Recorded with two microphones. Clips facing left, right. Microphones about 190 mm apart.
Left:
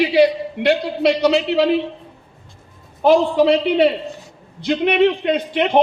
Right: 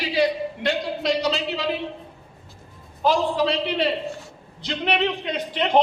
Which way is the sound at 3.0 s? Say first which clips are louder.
Left 7 dB; 55° left (ahead or behind).